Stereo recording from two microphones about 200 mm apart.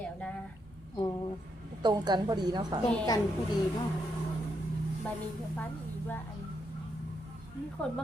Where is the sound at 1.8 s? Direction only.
20° right (ahead or behind).